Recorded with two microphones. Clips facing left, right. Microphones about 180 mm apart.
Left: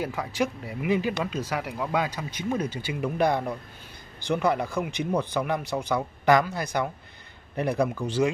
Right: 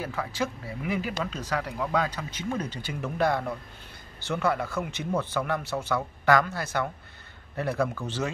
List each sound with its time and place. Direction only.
0.0 s speech: 15° left (ahead or behind)